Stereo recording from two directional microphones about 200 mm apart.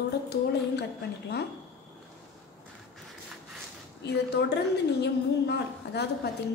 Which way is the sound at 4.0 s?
55° left (ahead or behind).